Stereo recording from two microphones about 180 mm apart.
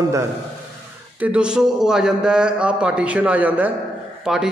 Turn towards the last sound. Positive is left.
turn(degrees=-5)  # may be behind; listen again after turning